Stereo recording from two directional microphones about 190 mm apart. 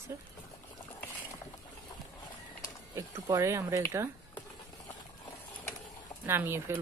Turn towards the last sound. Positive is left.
turn(degrees=-10)  # may be behind; listen again after turning